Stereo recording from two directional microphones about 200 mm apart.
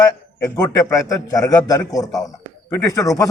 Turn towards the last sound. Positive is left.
turn(degrees=15)  # may be behind; listen again after turning